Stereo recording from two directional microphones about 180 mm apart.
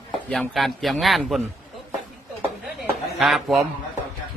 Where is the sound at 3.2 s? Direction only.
Centre (ahead or behind).